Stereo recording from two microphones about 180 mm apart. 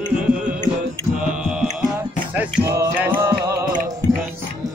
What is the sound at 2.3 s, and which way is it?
Music, 10° right (ahead or behind).